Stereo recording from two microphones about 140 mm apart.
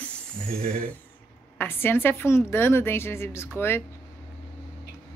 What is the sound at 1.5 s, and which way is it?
A woman's voice, 15° left (ahead or behind).